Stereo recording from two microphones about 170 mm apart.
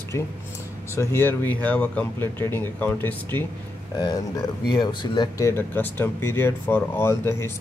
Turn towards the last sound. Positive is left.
turn(degrees=15)  # may be behind; listen again after turning